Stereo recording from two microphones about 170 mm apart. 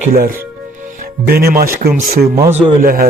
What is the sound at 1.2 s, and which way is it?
Speech, 65° right (ahead or behind).